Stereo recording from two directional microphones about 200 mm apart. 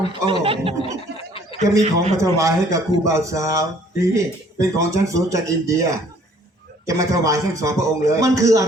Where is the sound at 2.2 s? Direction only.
15° right (ahead or behind).